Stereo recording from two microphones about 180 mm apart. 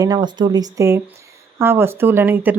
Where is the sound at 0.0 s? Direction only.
20° right (ahead or behind).